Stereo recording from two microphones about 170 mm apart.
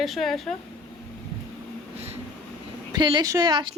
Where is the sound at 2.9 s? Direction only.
25° right (ahead or behind).